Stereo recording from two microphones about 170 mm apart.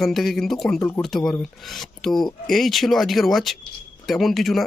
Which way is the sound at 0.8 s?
15° left (ahead or behind).